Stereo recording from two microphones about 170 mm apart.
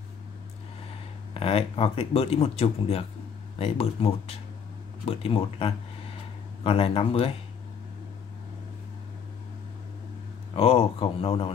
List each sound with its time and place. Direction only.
1.3 s speech: 35° left (ahead or behind)
10.5 s speech: 35° left (ahead or behind)